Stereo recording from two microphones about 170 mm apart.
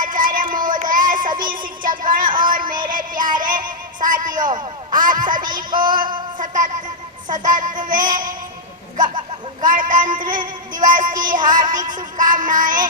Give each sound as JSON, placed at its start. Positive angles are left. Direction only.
{"t": 0.0, "sound": "a sound", "side_deg": -50}
{"t": 0.5, "sound": "child singing", "side_deg": -50}
{"t": 1.4, "sound": "a sound", "side_deg": -55}
{"t": 2.3, "sound": "music", "side_deg": -55}
{"t": 4.4, "sound": "music", "side_deg": -25}
{"t": 4.9, "sound": "a sound", "side_deg": -50}
{"t": 7.3, "sound": "child singing", "side_deg": -50}
{"t": 9.6, "sound": "a sound", "side_deg": -50}
{"t": 10.4, "sound": "child singing", "side_deg": -50}
{"t": 11.3, "sound": "music", "side_deg": -50}
{"t": 11.5, "sound": "music", "side_deg": -25}
{"t": 12.1, "sound": "music", "side_deg": -50}